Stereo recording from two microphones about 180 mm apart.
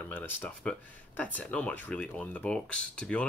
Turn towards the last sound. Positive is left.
turn(degrees=5)  # may be behind; listen again after turning